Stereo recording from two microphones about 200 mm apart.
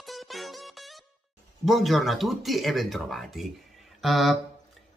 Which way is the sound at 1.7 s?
Centre (ahead or behind).